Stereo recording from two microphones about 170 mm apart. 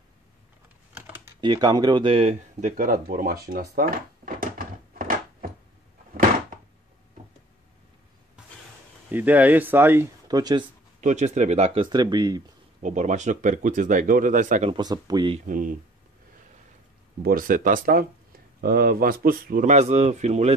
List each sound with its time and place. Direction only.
1.0 s typing: 15° right (ahead or behind)
1.4 s speech: 25° right (ahead or behind); by 5.5 s 55° right (ahead or behind)
9.1 s speech: 10° right (ahead or behind)
11.0 s speech: 45° right (ahead or behind); by 12.4 s 25° right (ahead or behind)
12.8 s speech: 45° right (ahead or behind)
14.7 s speech: 25° right (ahead or behind)
15.3 s speech: 50° right (ahead or behind)
17.2 s speech: 60° right (ahead or behind); by 20.5 s 40° right (ahead or behind)